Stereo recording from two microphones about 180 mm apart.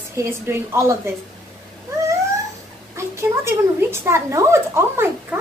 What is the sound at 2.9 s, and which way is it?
A woman's voice, 15° right (ahead or behind).